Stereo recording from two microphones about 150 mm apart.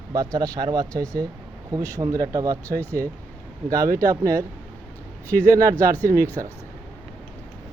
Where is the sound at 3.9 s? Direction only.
20° right (ahead or behind).